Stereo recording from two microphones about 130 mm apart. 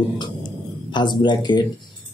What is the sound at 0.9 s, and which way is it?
Speech, 35° left (ahead or behind).